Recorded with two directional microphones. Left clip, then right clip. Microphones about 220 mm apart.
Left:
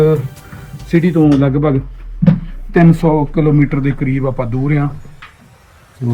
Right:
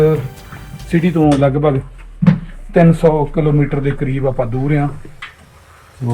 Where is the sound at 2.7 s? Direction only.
20° left (ahead or behind).